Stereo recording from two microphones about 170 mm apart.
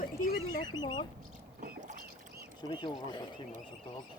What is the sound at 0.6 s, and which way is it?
Speech, 25° left (ahead or behind).